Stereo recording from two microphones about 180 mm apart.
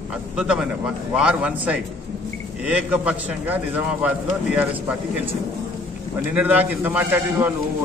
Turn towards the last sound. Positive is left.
turn(degrees=-10)  # may be behind; listen again after turning